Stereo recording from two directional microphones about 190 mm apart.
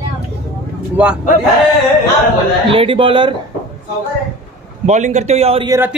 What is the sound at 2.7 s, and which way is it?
Speech, 30° right (ahead or behind).